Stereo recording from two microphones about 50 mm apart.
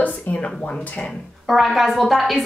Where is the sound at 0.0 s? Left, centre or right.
Left.